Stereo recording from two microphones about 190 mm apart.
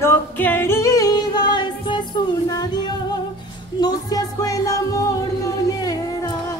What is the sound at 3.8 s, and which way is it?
Music, 20° left (ahead or behind).